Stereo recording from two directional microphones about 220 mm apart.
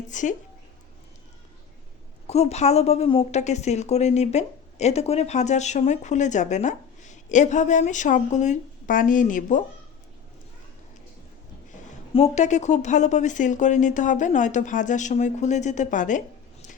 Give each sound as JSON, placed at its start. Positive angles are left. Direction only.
{"t": 0.1, "sound": "a woman's voice", "side_deg": 35}
{"t": 2.2, "sound": "a woman's voice", "side_deg": 30}
{"t": 11.7, "sound": "a woman's voice", "side_deg": 30}